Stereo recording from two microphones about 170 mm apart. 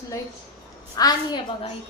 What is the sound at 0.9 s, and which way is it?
Speech, 20° left (ahead or behind).